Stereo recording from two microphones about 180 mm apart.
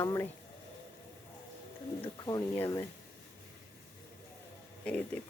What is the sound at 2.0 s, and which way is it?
Speech, 20° left (ahead or behind).